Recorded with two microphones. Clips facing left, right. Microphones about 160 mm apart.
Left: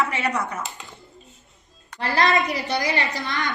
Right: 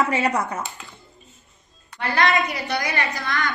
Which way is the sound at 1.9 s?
30° left (ahead or behind).